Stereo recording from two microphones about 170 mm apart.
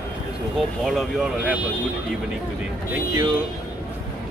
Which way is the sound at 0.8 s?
Centre (ahead or behind).